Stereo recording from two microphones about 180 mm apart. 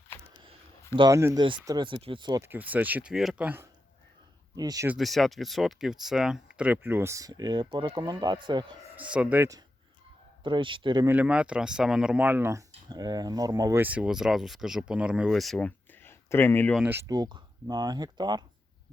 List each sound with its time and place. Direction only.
0.9 s speech: 20° right (ahead or behind)
2.4 s speech: 10° right (ahead or behind)
4.5 s speech: 20° right (ahead or behind)
4.9 s speech: centre (ahead or behind); by 8.7 s 25° right (ahead or behind)
9.0 s speech: 5° right (ahead or behind)
10.4 s speech: 25° right (ahead or behind)
11.0 s speech: 10° right (ahead or behind)
13.8 s speech: 5° right (ahead or behind); by 16.7 s 10° left (ahead or behind)
16.7 s speech: 10° right (ahead or behind)